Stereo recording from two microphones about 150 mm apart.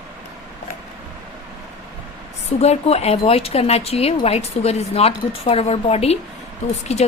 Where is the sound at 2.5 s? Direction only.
45° left (ahead or behind).